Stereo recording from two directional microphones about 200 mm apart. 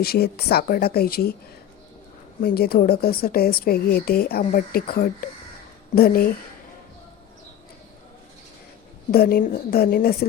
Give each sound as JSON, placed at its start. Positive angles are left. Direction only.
{"t": 0.0, "sound": "a woman's voice", "side_deg": 50}
{"t": 2.4, "sound": "a woman's voice", "side_deg": 50}
{"t": 9.1, "sound": "a woman's voice", "side_deg": 50}